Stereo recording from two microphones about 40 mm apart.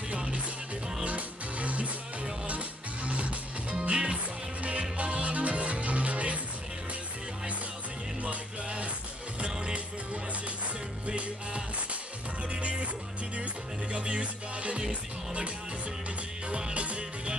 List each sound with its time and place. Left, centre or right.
0.1 s music: right
8.2 s music: right
11.1 s music: right
13.9 s music: right